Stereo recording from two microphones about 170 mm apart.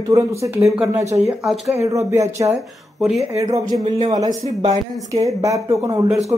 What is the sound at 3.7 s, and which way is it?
Speech, 40° right (ahead or behind).